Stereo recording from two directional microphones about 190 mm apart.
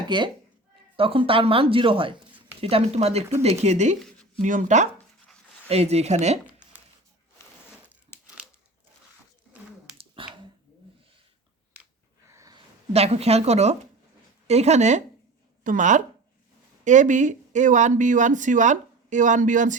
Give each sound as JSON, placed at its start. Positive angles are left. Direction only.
{"t": 0.1, "sound": "speech", "side_deg": -25}
{"t": 10.2, "sound": "finger snapping", "side_deg": -25}
{"t": 12.3, "sound": "a sound", "side_deg": -20}
{"t": 12.9, "sound": "speech", "side_deg": -35}